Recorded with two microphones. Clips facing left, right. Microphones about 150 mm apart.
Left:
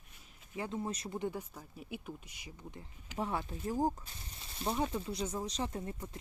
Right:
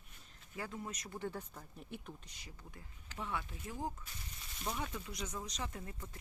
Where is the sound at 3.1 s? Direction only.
40° left (ahead or behind).